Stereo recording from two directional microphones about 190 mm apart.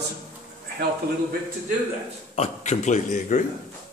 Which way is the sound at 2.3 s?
35° left (ahead or behind).